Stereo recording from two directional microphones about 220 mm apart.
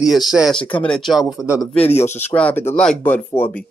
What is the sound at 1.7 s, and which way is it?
Speech, 10° left (ahead or behind).